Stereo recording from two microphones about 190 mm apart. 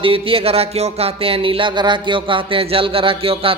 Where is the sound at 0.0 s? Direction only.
30° right (ahead or behind).